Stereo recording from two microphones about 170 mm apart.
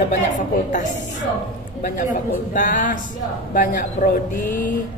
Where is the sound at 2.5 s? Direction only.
50° left (ahead or behind).